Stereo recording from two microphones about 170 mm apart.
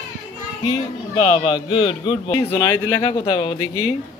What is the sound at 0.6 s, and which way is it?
A man's voice, 35° left (ahead or behind).